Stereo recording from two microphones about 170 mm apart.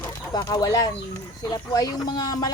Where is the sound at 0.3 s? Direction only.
20° left (ahead or behind).